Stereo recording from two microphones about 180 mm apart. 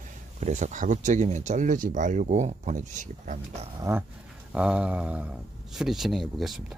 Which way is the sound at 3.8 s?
15° right (ahead or behind).